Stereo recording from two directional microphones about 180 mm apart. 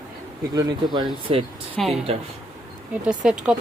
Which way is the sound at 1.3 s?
30° right (ahead or behind).